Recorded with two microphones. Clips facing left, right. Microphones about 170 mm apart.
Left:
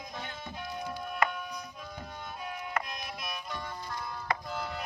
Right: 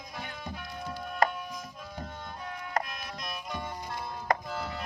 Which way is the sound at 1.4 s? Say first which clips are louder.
Right 1 dB; centre (ahead or behind).